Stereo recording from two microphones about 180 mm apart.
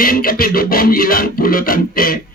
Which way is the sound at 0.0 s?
55° left (ahead or behind).